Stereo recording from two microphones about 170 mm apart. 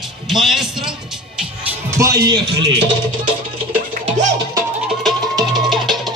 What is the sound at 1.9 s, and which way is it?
Speech, 20° right (ahead or behind).